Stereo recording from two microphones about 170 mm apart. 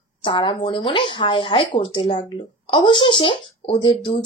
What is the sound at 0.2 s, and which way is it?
Speech, 30° left (ahead or behind).